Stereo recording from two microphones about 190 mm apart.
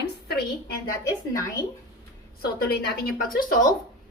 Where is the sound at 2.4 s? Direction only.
55° left (ahead or behind).